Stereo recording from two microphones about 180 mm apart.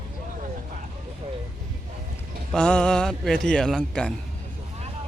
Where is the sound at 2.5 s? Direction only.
5° left (ahead or behind).